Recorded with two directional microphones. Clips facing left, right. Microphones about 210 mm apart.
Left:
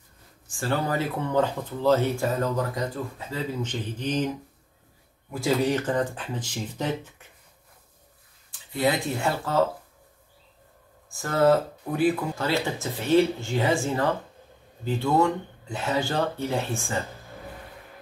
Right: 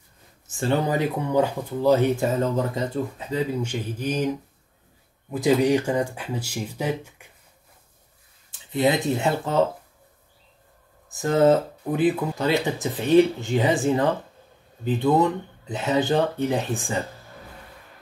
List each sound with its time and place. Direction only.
0.5 s speech: 20° right (ahead or behind)
5.3 s speech: 15° right (ahead or behind)
8.5 s speech: 20° right (ahead or behind)
11.1 s speech: 20° right (ahead or behind)